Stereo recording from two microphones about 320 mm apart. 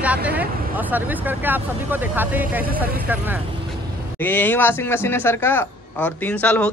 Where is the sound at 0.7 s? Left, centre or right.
Centre.